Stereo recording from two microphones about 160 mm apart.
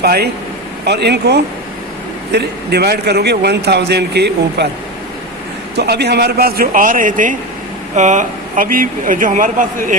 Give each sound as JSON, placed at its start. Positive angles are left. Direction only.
{"t": 0.0, "sound": "a man's voice", "side_deg": -80}
{"t": 5.7, "sound": "a man's voice", "side_deg": -90}